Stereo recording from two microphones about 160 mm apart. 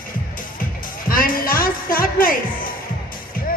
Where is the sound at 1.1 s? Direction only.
65° left (ahead or behind).